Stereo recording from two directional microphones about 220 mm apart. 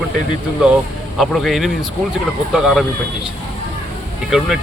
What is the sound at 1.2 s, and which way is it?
Speech, centre (ahead or behind).